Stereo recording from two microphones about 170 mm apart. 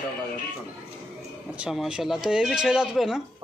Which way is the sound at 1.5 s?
5° right (ahead or behind).